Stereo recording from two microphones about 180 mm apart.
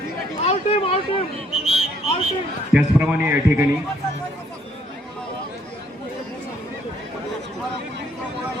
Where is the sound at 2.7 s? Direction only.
10° right (ahead or behind).